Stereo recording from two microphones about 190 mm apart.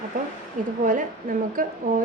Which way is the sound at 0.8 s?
45° right (ahead or behind).